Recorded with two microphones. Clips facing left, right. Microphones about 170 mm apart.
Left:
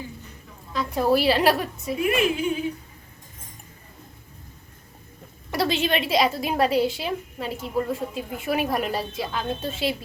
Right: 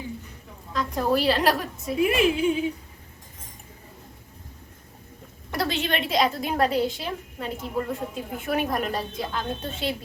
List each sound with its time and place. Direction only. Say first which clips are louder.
0.7 s a woman's voice: left 2 dB; 5° left (ahead or behind)
2.0 s speech: right 2 dB; 30° right (ahead or behind)
5.5 s a woman's voice: left 3 dB; centre (ahead or behind)